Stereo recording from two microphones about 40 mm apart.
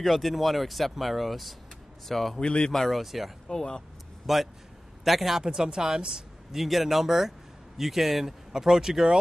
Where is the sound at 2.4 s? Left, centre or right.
Left.